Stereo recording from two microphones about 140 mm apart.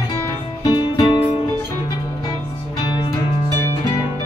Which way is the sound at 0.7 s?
30° left (ahead or behind).